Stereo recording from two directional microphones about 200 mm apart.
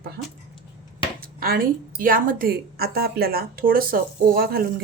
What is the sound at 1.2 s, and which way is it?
A woman's voice, 50° right (ahead or behind).